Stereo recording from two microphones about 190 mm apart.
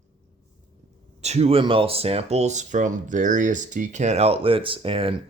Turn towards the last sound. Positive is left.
turn(degrees=-30)  # may be behind; listen again after turning